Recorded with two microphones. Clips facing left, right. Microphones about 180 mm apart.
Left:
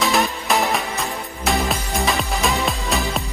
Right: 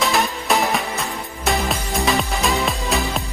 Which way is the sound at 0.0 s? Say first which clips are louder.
Left 1 dB; centre (ahead or behind).